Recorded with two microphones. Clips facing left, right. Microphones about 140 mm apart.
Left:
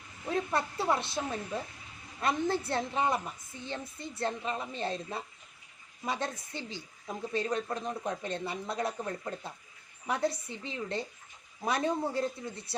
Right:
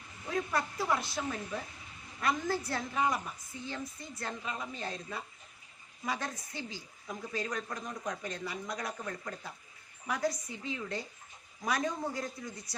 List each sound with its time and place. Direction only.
0.5 s speech: 25° left (ahead or behind)
2.2 s a woman's voice: 25° left (ahead or behind)